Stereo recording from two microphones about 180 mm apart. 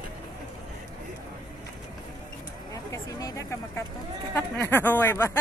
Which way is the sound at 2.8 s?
15° left (ahead or behind).